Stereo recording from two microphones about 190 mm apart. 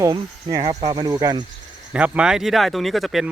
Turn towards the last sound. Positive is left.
turn(degrees=0)  # may be behind; listen again after turning